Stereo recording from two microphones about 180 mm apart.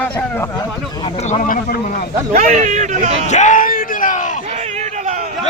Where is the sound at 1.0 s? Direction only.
35° left (ahead or behind).